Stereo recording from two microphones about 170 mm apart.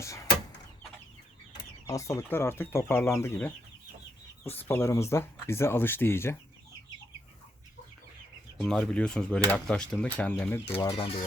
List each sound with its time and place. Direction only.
0.0 s a sound: 15° left (ahead or behind)
1.9 s speech: 20° left (ahead or behind)
8.5 s speech: 5° left (ahead or behind)
10.9 s speech: 35° left (ahead or behind)